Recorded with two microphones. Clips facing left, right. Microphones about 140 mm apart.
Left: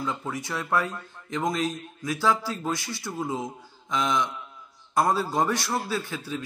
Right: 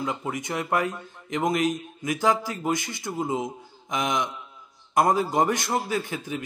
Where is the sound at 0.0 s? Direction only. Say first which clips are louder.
Right 2 dB; 15° right (ahead or behind).